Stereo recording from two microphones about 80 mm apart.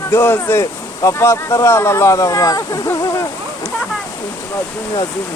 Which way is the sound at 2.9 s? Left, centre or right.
Left.